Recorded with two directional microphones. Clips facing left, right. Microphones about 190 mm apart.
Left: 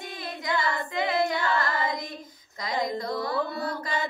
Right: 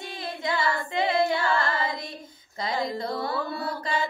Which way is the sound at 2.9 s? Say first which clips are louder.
Even; 30° right (ahead or behind).